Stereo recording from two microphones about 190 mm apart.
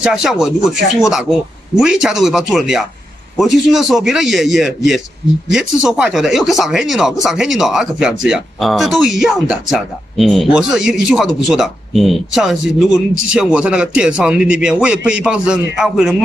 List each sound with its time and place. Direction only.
0.0 s speech: 5° right (ahead or behind)